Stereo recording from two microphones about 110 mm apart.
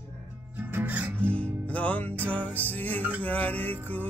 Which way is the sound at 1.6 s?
10° left (ahead or behind).